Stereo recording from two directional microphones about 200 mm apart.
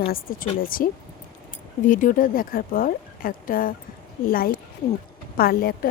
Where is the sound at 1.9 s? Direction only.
40° left (ahead or behind).